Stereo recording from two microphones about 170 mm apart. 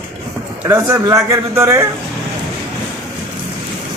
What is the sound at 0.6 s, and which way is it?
A man's voice, 15° right (ahead or behind).